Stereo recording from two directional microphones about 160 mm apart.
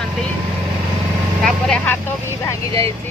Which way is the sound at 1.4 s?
5° left (ahead or behind).